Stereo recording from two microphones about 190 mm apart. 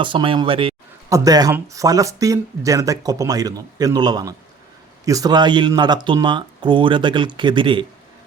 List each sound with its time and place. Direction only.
0.0 s speech: 25° right (ahead or behind)